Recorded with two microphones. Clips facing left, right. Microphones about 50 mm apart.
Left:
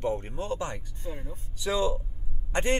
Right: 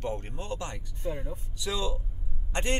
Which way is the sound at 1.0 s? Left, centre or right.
Right.